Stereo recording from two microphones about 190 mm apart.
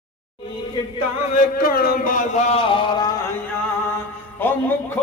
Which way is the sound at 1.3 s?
50° left (ahead or behind).